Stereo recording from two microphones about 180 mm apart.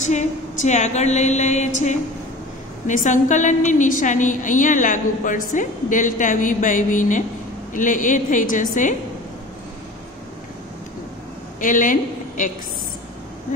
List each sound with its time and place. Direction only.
0.0 s a sound: 40° left (ahead or behind)
2.9 s a woman's voice: 45° left (ahead or behind)
11.6 s a woman's voice: 50° left (ahead or behind)